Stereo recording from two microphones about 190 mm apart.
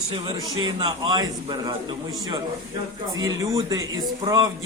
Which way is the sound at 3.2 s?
20° right (ahead or behind).